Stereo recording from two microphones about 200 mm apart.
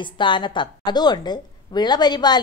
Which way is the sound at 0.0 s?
25° left (ahead or behind).